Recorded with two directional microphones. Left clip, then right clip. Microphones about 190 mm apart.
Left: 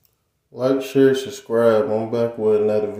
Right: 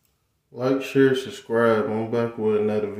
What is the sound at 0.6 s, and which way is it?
Speech, 5° right (ahead or behind).